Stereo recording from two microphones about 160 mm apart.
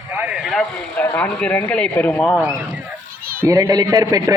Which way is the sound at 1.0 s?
10° left (ahead or behind).